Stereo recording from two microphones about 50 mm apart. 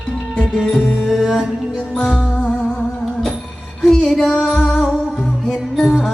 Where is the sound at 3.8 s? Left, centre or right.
Centre.